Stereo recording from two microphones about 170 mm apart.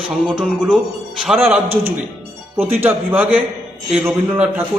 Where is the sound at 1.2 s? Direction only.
5° right (ahead or behind).